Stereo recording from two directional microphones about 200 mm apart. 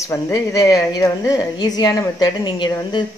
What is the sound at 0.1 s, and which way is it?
A woman's voice, 15° left (ahead or behind).